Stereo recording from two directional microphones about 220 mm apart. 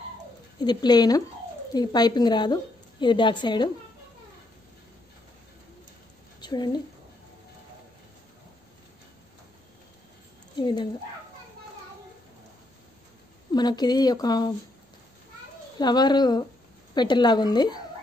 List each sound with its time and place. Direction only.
0.6 s a woman's voice: 20° left (ahead or behind)
6.4 s speech: 20° left (ahead or behind)
10.6 s a woman's voice: 20° left (ahead or behind)
13.5 s speech: 20° left (ahead or behind)
15.8 s a woman's voice: 20° left (ahead or behind)